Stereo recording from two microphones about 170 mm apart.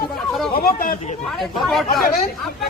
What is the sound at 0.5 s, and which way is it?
Speech, 55° left (ahead or behind).